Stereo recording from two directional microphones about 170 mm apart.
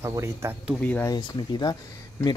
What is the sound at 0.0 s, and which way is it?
Speech, 15° right (ahead or behind).